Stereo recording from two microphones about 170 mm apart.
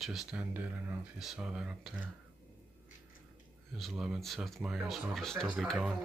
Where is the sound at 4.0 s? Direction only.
Centre (ahead or behind).